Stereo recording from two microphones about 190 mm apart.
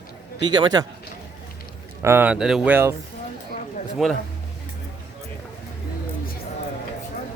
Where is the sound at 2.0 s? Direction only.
10° right (ahead or behind).